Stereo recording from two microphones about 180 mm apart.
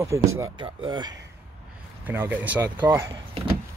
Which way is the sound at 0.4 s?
25° right (ahead or behind).